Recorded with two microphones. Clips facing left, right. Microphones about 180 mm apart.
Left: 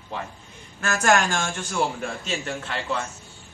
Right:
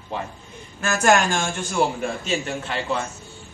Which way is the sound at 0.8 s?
20° right (ahead or behind).